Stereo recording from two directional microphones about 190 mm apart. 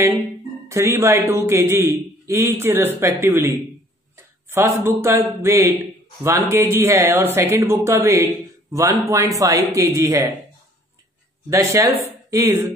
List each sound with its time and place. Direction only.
0.7 s a man's voice: 15° right (ahead or behind)
11.5 s speech: 15° right (ahead or behind)